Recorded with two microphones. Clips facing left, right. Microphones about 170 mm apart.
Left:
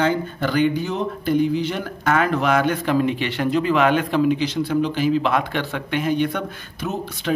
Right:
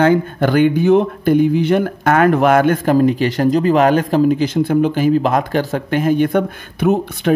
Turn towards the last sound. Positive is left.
turn(degrees=-55)  # may be behind; listen again after turning